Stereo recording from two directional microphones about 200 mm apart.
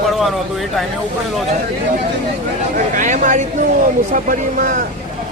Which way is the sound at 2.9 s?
40° right (ahead or behind).